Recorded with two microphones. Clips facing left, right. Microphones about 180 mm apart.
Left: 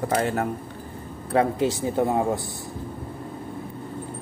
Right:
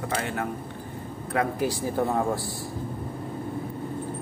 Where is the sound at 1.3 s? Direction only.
20° left (ahead or behind).